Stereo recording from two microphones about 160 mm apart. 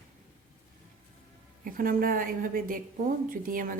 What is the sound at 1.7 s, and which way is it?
Speech, 60° right (ahead or behind).